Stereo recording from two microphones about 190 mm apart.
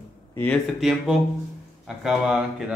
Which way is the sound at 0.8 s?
Centre (ahead or behind).